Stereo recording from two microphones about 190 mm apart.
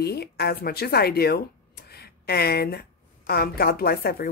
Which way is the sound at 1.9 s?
55° left (ahead or behind).